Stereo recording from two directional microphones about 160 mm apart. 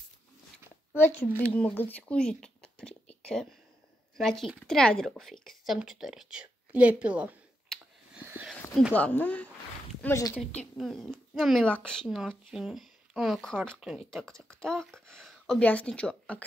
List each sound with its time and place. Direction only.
0.9 s speech: 15° left (ahead or behind); by 7.3 s 10° right (ahead or behind)
7.7 s clicking: 5° left (ahead or behind)
8.1 s a sound: 10° right (ahead or behind)
8.9 s speech: 10° left (ahead or behind)
10.8 s speech: centre (ahead or behind)